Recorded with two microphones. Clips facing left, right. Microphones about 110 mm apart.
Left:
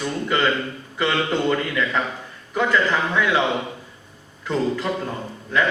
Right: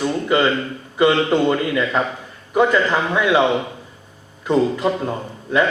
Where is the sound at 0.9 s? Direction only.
15° right (ahead or behind).